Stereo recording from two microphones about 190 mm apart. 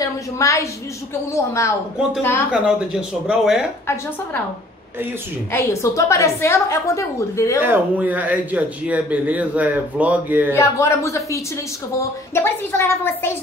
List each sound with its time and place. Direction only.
0.0 s a woman's voice: 15° left (ahead or behind)
2.5 s speech: 5° right (ahead or behind)
3.8 s a woman's voice: 15° left (ahead or behind)
5.5 s a woman's voice: 15° left (ahead or behind)
7.6 s speech: 10° right (ahead or behind)
10.5 s a woman's voice: 15° left (ahead or behind)